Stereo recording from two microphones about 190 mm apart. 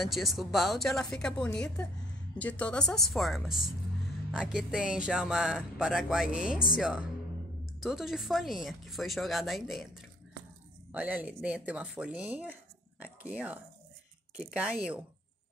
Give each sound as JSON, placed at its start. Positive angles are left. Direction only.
{"t": 0.0, "sound": "speech", "side_deg": 0}
{"t": 10.9, "sound": "speech", "side_deg": -10}